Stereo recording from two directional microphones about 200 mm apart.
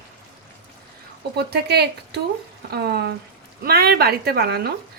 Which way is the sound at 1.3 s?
55° right (ahead or behind).